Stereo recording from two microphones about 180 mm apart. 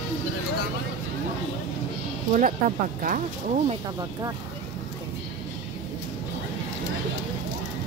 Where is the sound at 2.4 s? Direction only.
45° right (ahead or behind).